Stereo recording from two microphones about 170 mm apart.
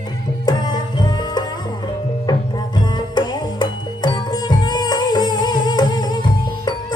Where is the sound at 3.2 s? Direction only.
25° left (ahead or behind).